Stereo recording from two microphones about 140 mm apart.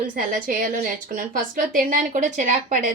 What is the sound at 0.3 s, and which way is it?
A woman's voice, 75° right (ahead or behind).